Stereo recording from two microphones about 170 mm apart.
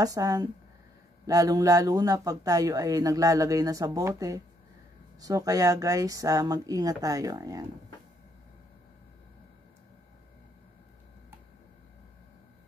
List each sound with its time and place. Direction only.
0.0 s speech: 20° right (ahead or behind)